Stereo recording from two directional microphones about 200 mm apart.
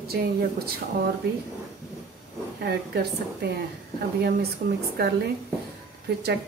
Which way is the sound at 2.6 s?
50° right (ahead or behind).